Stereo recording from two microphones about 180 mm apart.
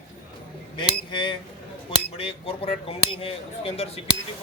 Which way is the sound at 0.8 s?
25° left (ahead or behind).